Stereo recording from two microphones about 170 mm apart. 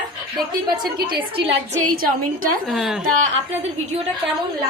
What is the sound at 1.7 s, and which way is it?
Speech, 50° right (ahead or behind).